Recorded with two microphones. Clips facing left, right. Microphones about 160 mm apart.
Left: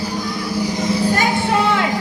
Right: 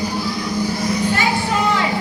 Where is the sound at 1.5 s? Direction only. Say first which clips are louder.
Left 2 dB; 60° left (ahead or behind).